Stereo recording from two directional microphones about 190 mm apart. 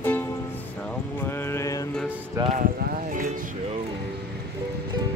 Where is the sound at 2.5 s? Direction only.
45° right (ahead or behind).